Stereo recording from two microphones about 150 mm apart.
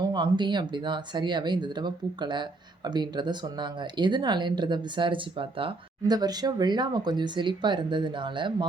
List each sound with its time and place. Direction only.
0.0 s speech: 30° right (ahead or behind)